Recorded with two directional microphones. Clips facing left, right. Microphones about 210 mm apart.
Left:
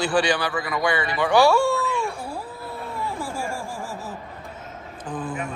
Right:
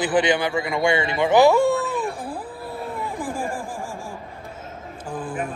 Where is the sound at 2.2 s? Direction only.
15° right (ahead or behind).